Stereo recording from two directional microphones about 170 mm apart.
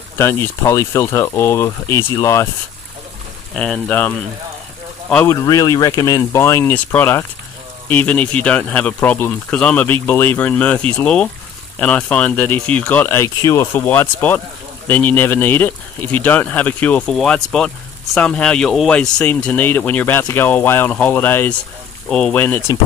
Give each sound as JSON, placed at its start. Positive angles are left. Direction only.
{"t": 0.2, "sound": "speech", "side_deg": 15}
{"t": 3.5, "sound": "speech", "side_deg": 5}
{"t": 5.1, "sound": "speech", "side_deg": 15}